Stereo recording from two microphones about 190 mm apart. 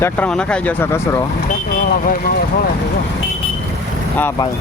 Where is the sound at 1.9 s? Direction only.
50° left (ahead or behind).